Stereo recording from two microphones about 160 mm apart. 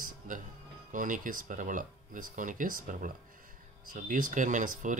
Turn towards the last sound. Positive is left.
turn(degrees=-50)  # may be behind; listen again after turning